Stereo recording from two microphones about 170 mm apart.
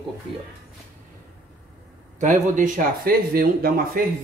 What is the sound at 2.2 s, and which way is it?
Speech, 50° right (ahead or behind).